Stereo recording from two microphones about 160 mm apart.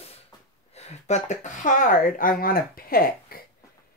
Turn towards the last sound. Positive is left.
turn(degrees=65)  # may be behind; listen again after turning